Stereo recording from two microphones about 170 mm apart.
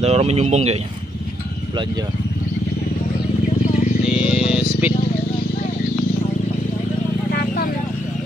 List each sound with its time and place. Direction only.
0.0 s speech: 40° right (ahead or behind)
4.1 s vehicle: 5° right (ahead or behind)
7.3 s a sound: 60° left (ahead or behind)